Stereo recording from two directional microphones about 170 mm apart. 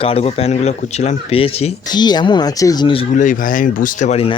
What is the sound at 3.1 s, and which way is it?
Speech, 50° left (ahead or behind).